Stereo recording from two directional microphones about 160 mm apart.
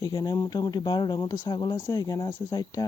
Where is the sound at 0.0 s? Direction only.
25° left (ahead or behind).